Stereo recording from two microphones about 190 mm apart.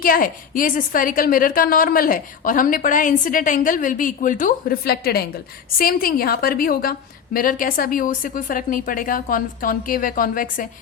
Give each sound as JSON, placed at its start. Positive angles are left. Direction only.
{"t": 0.0, "sound": "a woman's voice", "side_deg": 45}